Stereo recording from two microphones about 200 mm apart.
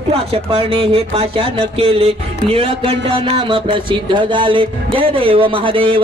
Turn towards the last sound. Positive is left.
turn(degrees=-25)  # may be behind; listen again after turning